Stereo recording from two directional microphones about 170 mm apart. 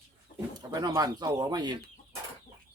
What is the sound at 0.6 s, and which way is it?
Speech, 20° right (ahead or behind).